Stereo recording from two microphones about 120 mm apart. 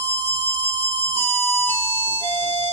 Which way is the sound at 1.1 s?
20° left (ahead or behind).